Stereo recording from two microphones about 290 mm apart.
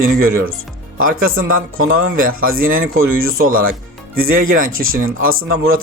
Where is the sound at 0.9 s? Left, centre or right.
Right.